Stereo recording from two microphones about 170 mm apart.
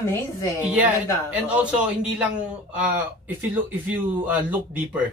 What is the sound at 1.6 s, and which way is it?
A man's voice, 5° right (ahead or behind).